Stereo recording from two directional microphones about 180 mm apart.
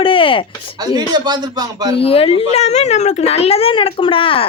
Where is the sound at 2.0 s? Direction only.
30° left (ahead or behind).